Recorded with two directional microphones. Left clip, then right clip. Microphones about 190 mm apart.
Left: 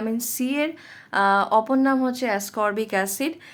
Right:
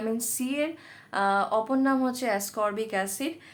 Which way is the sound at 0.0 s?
20° left (ahead or behind).